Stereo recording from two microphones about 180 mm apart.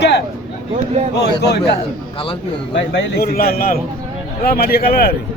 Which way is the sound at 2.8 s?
80° left.